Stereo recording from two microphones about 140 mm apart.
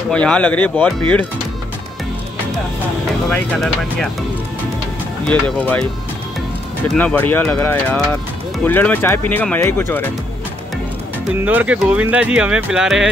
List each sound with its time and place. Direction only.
0.1 s speech: 5° left (ahead or behind)
3.3 s speech: 5° left (ahead or behind)
5.2 s speech: 10° left (ahead or behind)
6.9 s speech: 10° left (ahead or behind)
11.4 s speech: 10° right (ahead or behind)